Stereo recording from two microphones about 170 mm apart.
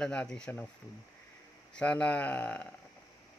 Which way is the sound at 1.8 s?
5° left (ahead or behind).